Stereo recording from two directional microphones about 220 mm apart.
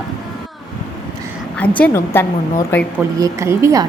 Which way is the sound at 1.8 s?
10° left (ahead or behind).